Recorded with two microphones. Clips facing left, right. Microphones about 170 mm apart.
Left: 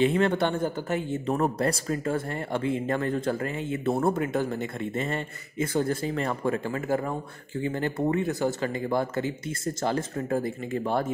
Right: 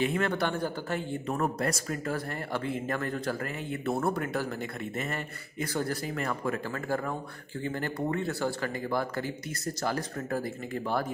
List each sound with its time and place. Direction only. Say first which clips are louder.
0.0 s speech: left 5 dB; 25° left (ahead or behind)